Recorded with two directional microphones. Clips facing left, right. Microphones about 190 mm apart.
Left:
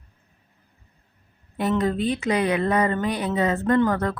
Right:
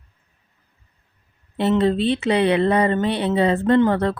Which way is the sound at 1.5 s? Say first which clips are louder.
Right 4 dB; 25° right (ahead or behind).